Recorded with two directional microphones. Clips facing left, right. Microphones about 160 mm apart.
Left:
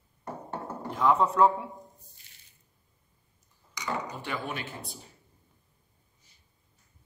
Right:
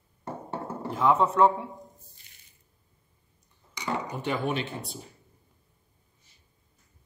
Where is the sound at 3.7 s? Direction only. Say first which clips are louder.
Right 2 dB; 25° right (ahead or behind).